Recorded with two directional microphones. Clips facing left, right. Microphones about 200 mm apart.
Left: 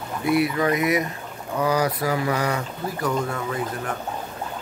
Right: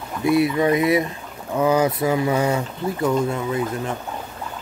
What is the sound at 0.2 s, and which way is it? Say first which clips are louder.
Speech: right 3 dB; 25° right (ahead or behind).